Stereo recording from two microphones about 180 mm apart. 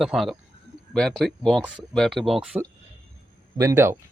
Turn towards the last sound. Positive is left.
turn(degrees=-15)  # may be behind; listen again after turning